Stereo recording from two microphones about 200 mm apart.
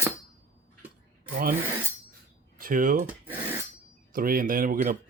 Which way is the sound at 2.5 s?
45° right (ahead or behind).